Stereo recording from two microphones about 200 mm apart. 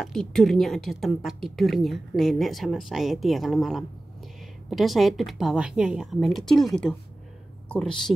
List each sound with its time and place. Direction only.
0.0 s a woman's voice: 5° left (ahead or behind)